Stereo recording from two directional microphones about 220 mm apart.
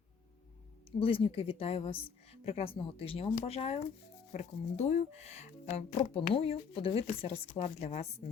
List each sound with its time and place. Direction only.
0.9 s a woman's voice: 25° left (ahead or behind)